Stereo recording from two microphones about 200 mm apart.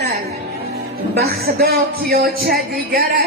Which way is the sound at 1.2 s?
50° right (ahead or behind).